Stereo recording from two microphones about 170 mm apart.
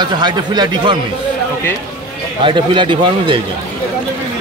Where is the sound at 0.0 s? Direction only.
25° right (ahead or behind).